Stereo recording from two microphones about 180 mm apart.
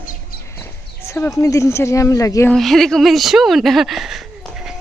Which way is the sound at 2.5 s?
Centre (ahead or behind).